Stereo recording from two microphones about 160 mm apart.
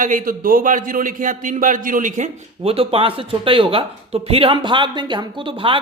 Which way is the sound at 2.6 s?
35° right (ahead or behind).